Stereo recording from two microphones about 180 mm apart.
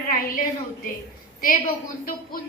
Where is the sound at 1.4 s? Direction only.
50° left (ahead or behind).